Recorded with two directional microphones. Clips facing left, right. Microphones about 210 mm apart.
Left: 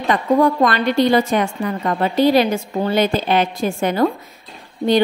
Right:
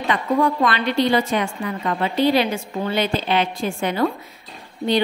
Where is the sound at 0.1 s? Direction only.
40° left (ahead or behind).